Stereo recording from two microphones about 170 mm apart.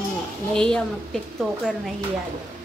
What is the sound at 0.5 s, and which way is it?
A woman's voice, 5° left (ahead or behind).